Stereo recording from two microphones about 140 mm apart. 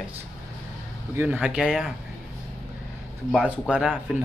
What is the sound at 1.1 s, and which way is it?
Speech, 10° right (ahead or behind).